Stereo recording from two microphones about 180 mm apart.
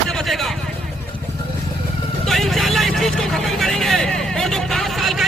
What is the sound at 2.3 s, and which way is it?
Vehicle, centre (ahead or behind).